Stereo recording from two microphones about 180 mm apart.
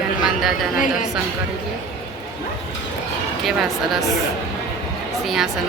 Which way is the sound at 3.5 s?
Centre (ahead or behind).